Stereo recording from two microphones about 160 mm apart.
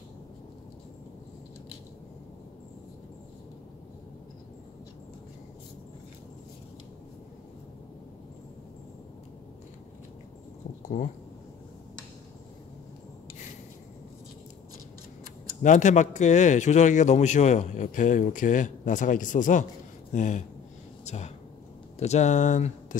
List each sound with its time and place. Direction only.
15.6 s a man's voice: 50° left (ahead or behind)